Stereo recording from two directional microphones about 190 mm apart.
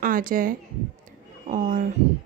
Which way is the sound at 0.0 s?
45° right (ahead or behind).